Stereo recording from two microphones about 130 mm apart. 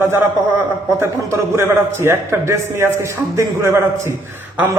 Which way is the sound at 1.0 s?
20° right (ahead or behind).